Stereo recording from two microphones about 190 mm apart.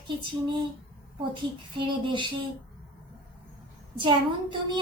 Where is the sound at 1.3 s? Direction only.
25° right (ahead or behind).